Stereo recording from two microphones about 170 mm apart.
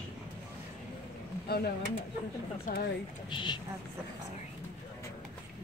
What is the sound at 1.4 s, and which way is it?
Pigeon, 65° left (ahead or behind).